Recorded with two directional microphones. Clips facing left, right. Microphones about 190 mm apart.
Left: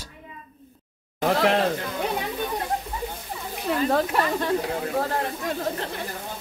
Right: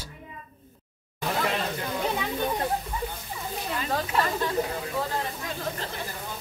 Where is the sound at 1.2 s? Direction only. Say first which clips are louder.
Left 7 dB; 75° left (ahead or behind).